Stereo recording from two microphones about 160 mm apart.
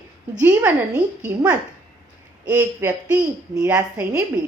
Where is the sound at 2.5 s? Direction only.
10° right (ahead or behind).